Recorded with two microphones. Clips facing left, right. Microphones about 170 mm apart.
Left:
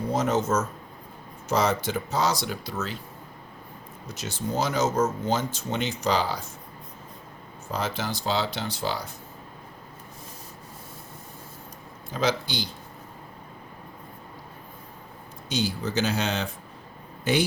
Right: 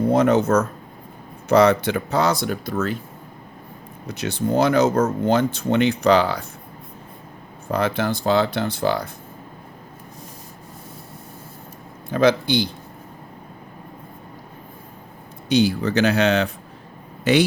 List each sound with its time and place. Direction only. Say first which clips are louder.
0.1 s speech: right 6 dB; 60° right (ahead or behind)
4.1 s speech: right 9 dB; 65° right (ahead or behind)
7.7 s speech: right 8 dB; 60° right (ahead or behind)
12.1 s speech: right 9 dB; 60° right (ahead or behind)
15.4 s speech: right 10 dB; 65° right (ahead or behind)
17.3 s a man's voice: right 7 dB; 75° right (ahead or behind)